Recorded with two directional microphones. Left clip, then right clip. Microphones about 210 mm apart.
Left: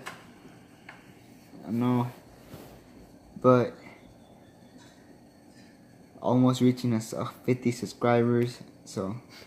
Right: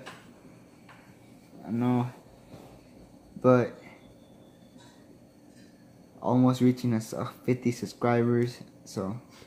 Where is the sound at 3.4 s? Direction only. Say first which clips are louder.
Left 1 dB; centre (ahead or behind).